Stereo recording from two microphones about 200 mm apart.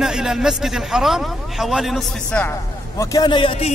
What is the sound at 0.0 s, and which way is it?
A man's voice, 5° right (ahead or behind).